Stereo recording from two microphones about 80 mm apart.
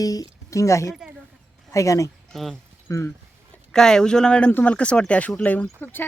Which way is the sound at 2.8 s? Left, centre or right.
Left.